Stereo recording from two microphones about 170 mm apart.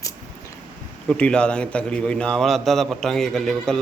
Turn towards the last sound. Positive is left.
turn(degrees=0)  # may be behind; listen again after turning